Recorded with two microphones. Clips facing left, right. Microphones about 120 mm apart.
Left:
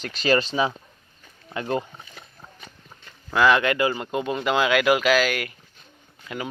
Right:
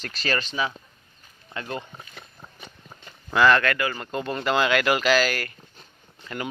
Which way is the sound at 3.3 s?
5° left (ahead or behind).